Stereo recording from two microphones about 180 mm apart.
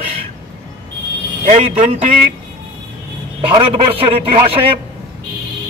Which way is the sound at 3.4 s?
30° right (ahead or behind).